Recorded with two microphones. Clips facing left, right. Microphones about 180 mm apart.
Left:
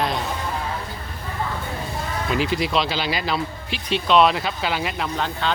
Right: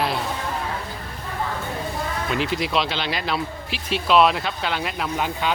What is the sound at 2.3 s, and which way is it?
Speech, centre (ahead or behind).